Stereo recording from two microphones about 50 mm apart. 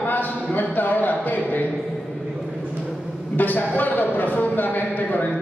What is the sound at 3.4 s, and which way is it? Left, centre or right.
A man's voice, left.